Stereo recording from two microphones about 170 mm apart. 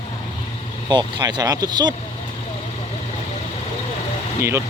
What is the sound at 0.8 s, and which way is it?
Speech, 25° right (ahead or behind).